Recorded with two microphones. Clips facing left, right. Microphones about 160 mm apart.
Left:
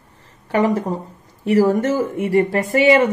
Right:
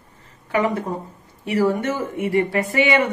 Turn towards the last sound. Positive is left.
turn(degrees=40)  # may be behind; listen again after turning